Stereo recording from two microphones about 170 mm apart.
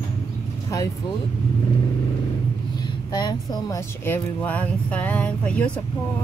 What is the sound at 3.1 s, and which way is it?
Speech, 25° left (ahead or behind).